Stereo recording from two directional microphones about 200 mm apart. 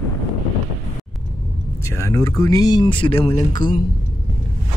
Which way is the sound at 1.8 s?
15° left (ahead or behind).